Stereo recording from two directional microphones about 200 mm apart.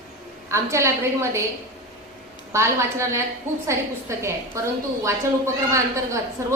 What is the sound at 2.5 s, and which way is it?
A woman's voice, 15° right (ahead or behind).